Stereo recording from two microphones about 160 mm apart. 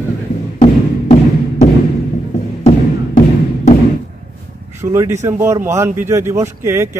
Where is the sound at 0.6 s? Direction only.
45° left (ahead or behind).